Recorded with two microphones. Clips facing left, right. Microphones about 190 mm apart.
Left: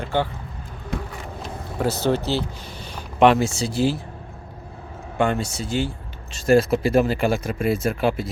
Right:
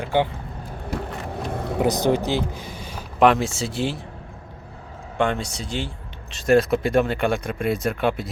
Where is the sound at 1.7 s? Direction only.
15° right (ahead or behind); by 4.0 s centre (ahead or behind).